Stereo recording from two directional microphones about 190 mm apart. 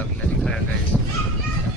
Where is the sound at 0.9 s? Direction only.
Centre (ahead or behind).